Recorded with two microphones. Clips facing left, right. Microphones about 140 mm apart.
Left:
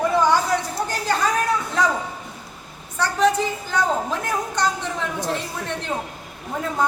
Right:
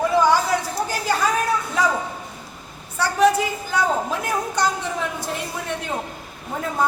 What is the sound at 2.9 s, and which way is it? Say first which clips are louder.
A child's voice: right 2 dB; 10° right (ahead or behind).